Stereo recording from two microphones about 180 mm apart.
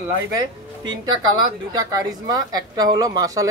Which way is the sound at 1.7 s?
20° right (ahead or behind).